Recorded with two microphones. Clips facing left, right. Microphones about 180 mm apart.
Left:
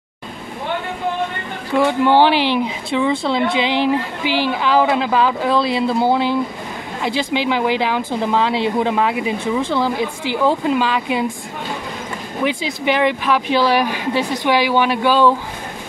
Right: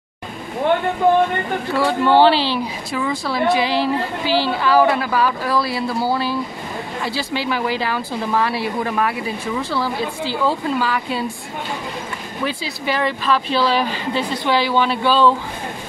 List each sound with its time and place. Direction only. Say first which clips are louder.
1.8 s speech: left 1 dB; 15° left (ahead or behind)
12.4 s speech: left 5 dB; 20° left (ahead or behind)